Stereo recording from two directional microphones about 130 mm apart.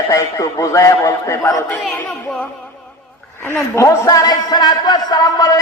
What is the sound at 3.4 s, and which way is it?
A man's voice, 15° left (ahead or behind).